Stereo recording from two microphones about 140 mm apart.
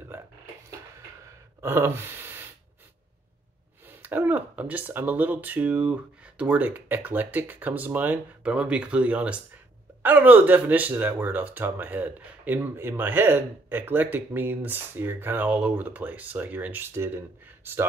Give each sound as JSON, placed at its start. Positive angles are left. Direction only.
{"t": 0.1, "sound": "speech", "side_deg": -15}
{"t": 1.6, "sound": "speech", "side_deg": -15}
{"t": 4.0, "sound": "speech", "side_deg": -15}